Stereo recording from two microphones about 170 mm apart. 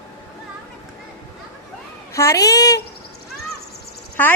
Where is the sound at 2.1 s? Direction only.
20° left (ahead or behind).